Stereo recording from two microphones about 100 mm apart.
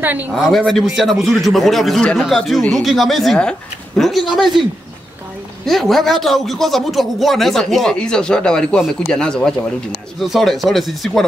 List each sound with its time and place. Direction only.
0.0 s speech: 20° right (ahead or behind)
0.3 s a man's voice: 5° left (ahead or behind)
5.7 s a man's voice: centre (ahead or behind)